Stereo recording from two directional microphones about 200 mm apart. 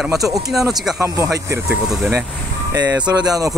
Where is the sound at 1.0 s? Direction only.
15° right (ahead or behind).